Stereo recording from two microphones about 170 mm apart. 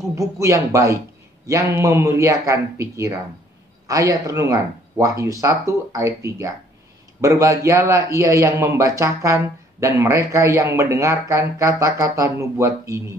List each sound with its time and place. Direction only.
0.0 s a man's voice: 20° right (ahead or behind)